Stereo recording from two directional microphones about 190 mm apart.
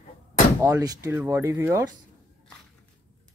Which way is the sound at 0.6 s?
15° right (ahead or behind).